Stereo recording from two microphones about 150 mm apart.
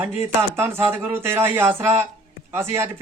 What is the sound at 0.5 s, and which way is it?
Speech, 15° right (ahead or behind).